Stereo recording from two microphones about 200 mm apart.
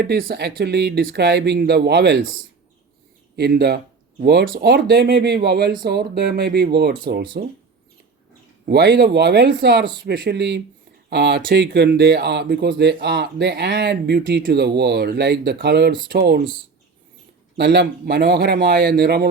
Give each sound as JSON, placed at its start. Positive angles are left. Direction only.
{"t": 0.0, "sound": "speech", "side_deg": -50}
{"t": 3.3, "sound": "speech", "side_deg": -55}
{"t": 8.6, "sound": "speech", "side_deg": -55}
{"t": 17.6, "sound": "speech", "side_deg": -55}